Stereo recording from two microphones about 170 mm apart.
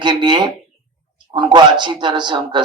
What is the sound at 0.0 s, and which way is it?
Speech, 25° right (ahead or behind).